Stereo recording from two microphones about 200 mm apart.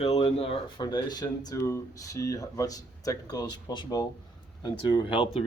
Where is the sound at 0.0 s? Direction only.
30° left (ahead or behind).